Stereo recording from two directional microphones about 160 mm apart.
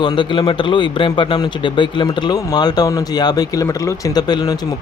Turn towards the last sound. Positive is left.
turn(degrees=25)  # may be behind; listen again after turning